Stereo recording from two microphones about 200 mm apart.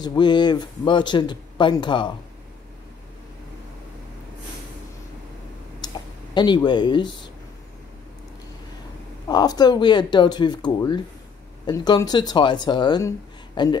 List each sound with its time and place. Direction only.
0.0 s speech: 20° left (ahead or behind)
5.8 s a sound: 20° left (ahead or behind)
6.3 s speech: 20° left (ahead or behind)
9.3 s speech: 20° left (ahead or behind)